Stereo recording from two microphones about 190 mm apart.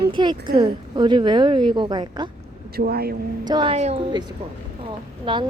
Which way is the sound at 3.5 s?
25° right (ahead or behind).